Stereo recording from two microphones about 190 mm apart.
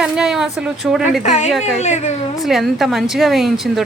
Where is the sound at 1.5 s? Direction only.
5° right (ahead or behind).